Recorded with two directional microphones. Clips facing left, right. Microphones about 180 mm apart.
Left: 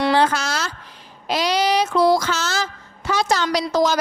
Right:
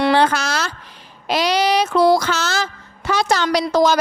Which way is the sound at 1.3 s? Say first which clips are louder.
Right 2 dB; 70° right (ahead or behind).